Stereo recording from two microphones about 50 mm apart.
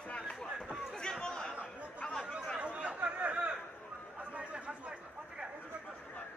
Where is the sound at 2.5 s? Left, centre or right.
Right.